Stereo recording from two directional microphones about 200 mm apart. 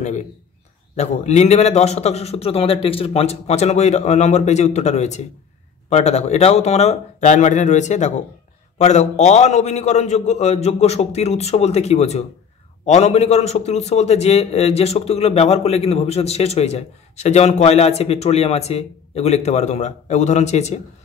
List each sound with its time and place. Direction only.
0.9 s a man's voice: 35° left (ahead or behind)